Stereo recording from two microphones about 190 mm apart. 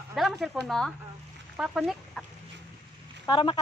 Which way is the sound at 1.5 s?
5° right (ahead or behind).